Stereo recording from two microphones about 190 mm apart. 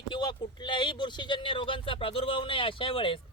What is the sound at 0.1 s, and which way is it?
Speech, 25° left (ahead or behind).